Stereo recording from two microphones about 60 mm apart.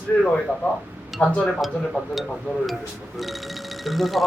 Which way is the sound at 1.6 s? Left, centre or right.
Centre.